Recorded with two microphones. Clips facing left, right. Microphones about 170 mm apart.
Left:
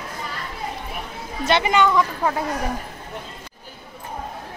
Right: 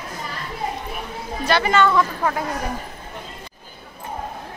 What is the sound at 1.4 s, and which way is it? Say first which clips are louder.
Speech: even; 20° left (ahead or behind).